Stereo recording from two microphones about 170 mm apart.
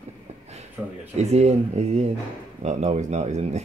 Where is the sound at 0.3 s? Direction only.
40° right (ahead or behind).